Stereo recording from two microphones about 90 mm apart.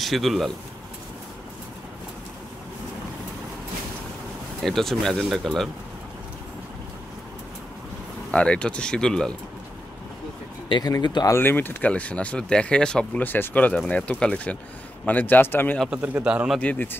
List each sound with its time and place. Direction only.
0.0 s speech: centre (ahead or behind)
4.6 s speech: centre (ahead or behind)
8.3 s speech: 10° left (ahead or behind)
10.7 s speech: 50° left (ahead or behind)
11.2 s speech: 25° left (ahead or behind); by 13.2 s 10° left (ahead or behind)
13.2 s a man's voice: 20° left (ahead or behind)
15.9 s a man's voice: 15° right (ahead or behind)
16.5 s a man's voice: 20° left (ahead or behind)